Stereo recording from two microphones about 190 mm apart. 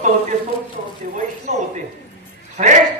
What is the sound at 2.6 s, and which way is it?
Speech, 40° right (ahead or behind).